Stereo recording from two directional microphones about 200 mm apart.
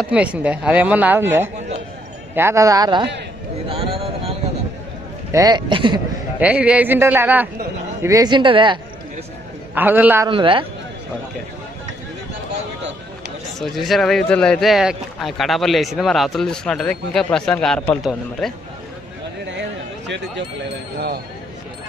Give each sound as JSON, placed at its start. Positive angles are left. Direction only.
{"t": 0.1, "sound": "speech", "side_deg": -5}
{"t": 5.3, "sound": "speech", "side_deg": -20}
{"t": 6.4, "sound": "speech", "side_deg": -5}
{"t": 9.8, "sound": "speech", "side_deg": -10}
{"t": 10.2, "sound": "speech", "side_deg": -25}
{"t": 13.6, "sound": "speech", "side_deg": 0}